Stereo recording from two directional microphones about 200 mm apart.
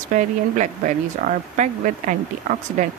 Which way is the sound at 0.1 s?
40° right (ahead or behind).